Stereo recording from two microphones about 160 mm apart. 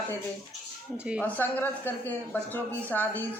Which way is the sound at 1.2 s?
10° left (ahead or behind).